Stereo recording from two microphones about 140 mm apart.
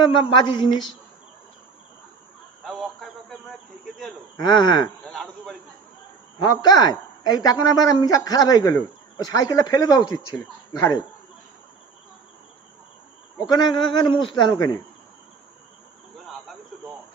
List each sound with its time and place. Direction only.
0.0 s a man's voice: 35° left (ahead or behind)
2.6 s a sound: centre (ahead or behind)
4.4 s a man's voice: 30° left (ahead or behind)
5.0 s speech: centre (ahead or behind)
6.4 s a woman's voice: 30° left (ahead or behind)
13.5 s a man's voice: 30° left (ahead or behind)